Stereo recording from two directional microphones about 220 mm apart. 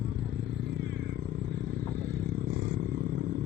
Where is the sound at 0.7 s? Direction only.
50° right (ahead or behind).